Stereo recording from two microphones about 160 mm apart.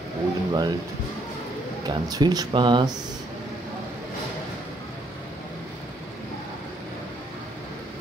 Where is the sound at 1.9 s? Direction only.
25° right (ahead or behind).